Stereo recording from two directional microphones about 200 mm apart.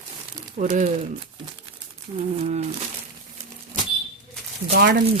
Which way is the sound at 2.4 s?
35° right (ahead or behind).